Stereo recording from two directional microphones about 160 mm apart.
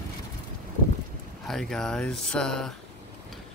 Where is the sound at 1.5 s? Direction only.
5° left (ahead or behind).